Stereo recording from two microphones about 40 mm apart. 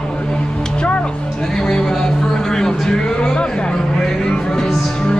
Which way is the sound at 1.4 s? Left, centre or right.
Centre.